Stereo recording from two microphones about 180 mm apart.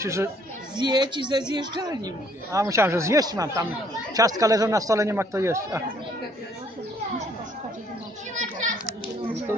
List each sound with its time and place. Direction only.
0.0 s a man's voice: 15° right (ahead or behind)
8.4 s children playing: 45° right (ahead or behind)